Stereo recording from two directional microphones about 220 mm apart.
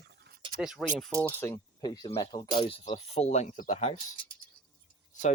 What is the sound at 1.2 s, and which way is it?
Speech, 15° left (ahead or behind).